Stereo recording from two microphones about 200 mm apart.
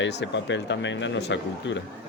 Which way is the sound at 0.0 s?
60° left (ahead or behind).